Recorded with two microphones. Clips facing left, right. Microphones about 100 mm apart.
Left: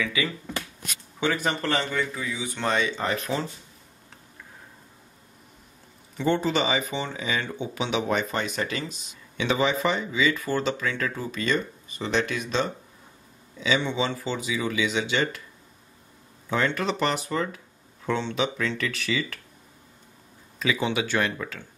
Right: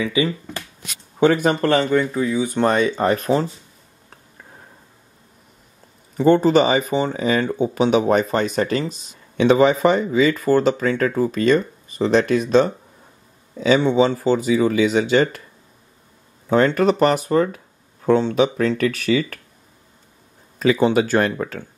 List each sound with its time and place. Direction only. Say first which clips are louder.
0.0 s speech: right 8 dB; 25° right (ahead or behind)
1.2 s speech: right 10 dB; 50° right (ahead or behind)
6.1 s speech: right 10 dB; 45° right (ahead or behind)
16.4 s speech: right 10 dB; 45° right (ahead or behind)
20.5 s speech: right 10 dB; 45° right (ahead or behind)